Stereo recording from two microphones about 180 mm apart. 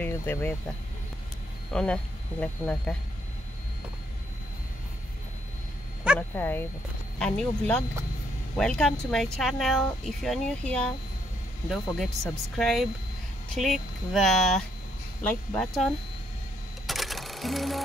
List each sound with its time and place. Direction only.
0.0 s speech: 10° left (ahead or behind)
1.7 s speech: 5° left (ahead or behind)
6.1 s speech: 10° left (ahead or behind)
16.8 s cash register: centre (ahead or behind)